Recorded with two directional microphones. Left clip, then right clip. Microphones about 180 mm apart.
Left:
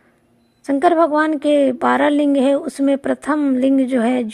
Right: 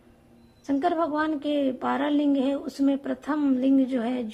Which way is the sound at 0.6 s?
40° left (ahead or behind).